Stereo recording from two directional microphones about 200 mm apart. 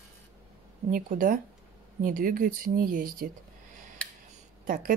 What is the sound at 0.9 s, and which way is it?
Speech, 45° right (ahead or behind).